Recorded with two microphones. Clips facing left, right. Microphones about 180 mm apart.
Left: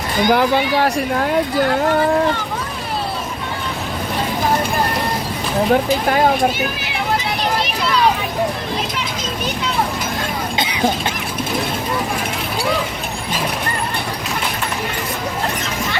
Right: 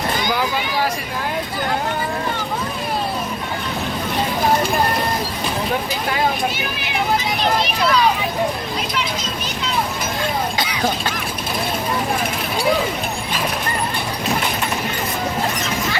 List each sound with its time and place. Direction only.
0.3 s speech: 60° left (ahead or behind)